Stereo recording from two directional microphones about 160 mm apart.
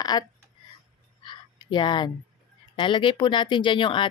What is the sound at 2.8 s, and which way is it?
Speech, 30° left (ahead or behind).